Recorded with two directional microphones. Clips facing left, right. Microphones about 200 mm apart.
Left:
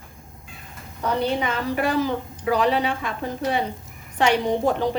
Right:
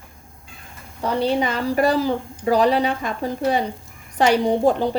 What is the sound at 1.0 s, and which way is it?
Speech, 35° right (ahead or behind).